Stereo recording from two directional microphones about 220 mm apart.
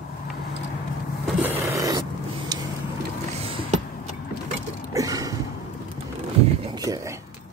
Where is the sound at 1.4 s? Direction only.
10° right (ahead or behind).